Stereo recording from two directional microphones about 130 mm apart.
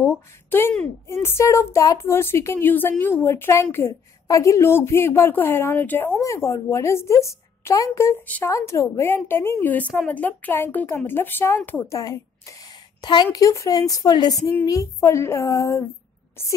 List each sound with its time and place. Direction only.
0.0 s a woman's voice: 20° left (ahead or behind)
14.4 s a woman's voice: 20° left (ahead or behind)